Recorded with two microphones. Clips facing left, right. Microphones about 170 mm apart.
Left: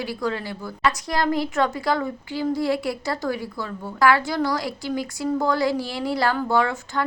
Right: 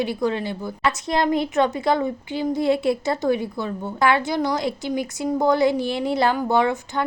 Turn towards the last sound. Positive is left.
turn(degrees=-20)  # may be behind; listen again after turning